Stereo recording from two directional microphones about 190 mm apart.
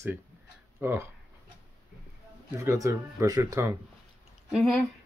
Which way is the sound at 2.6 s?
15° right (ahead or behind).